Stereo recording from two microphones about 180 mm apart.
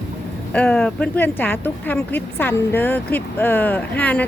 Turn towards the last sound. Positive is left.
turn(degrees=10)  # may be behind; listen again after turning